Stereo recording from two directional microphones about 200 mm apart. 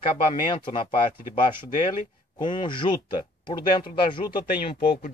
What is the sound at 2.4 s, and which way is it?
Speech, 25° left (ahead or behind).